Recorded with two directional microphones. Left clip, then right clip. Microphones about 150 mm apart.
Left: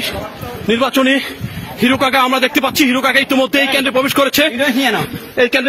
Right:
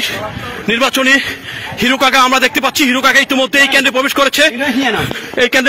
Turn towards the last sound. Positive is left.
turn(degrees=-20)  # may be behind; listen again after turning